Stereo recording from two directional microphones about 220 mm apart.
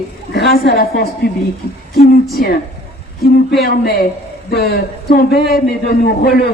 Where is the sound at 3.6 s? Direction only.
45° left (ahead or behind).